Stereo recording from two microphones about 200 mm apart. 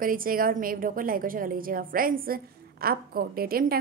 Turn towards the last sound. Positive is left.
turn(degrees=-50)  # may be behind; listen again after turning